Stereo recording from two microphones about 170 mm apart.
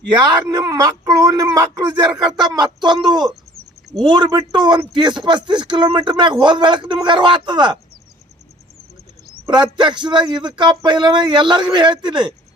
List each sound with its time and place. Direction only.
0.1 s speech: 25° right (ahead or behind)
9.7 s speech: 25° right (ahead or behind)